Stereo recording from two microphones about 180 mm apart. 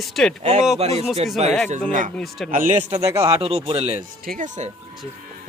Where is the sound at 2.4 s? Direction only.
50° right (ahead or behind).